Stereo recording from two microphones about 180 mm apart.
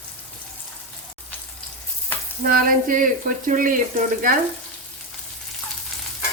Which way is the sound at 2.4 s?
50° right (ahead or behind).